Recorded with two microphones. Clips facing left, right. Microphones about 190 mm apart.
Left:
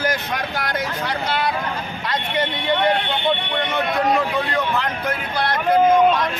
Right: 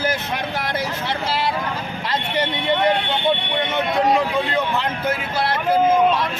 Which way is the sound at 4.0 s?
20° right (ahead or behind).